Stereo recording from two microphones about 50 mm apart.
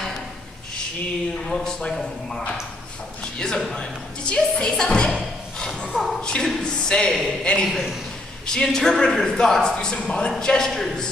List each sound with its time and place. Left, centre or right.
1.5 s a man's voice: centre
10.7 s a woman's voice: centre